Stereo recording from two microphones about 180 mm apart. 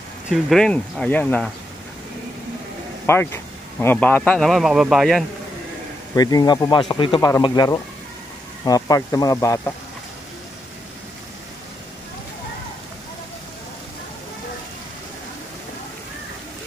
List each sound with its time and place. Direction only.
0.3 s a man's voice: centre (ahead or behind)
3.1 s a man's voice: 15° left (ahead or behind)
6.1 s speech: 20° left (ahead or behind)